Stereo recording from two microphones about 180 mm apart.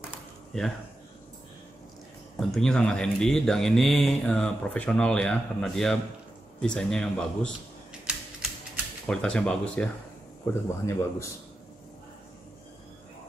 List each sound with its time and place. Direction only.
0.5 s speech: centre (ahead or behind)
2.4 s speech: 5° left (ahead or behind)
8.1 s typewriter: 5° right (ahead or behind)
9.0 s speech: 5° left (ahead or behind)
10.4 s a man's voice: 15° left (ahead or behind)